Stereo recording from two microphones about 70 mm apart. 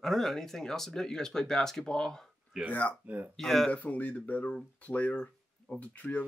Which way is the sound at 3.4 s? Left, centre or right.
Centre.